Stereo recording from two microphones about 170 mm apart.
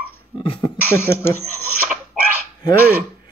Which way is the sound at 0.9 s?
15° left (ahead or behind).